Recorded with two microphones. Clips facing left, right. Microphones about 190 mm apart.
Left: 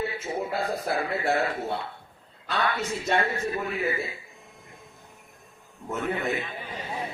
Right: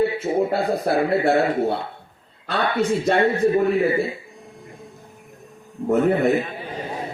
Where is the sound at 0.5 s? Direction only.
35° right (ahead or behind).